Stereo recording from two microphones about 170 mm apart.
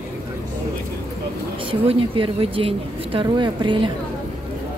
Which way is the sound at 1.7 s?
30° right (ahead or behind).